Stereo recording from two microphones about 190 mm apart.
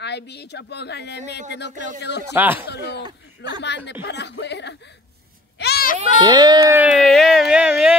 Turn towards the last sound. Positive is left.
turn(degrees=-5)  # may be behind; listen again after turning